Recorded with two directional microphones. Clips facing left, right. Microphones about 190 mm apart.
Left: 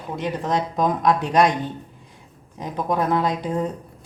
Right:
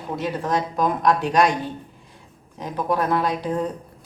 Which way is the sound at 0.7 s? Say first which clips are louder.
Left 1 dB; 20° left (ahead or behind).